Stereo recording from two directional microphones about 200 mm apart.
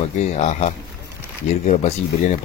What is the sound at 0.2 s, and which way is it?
A man's voice, 35° left (ahead or behind).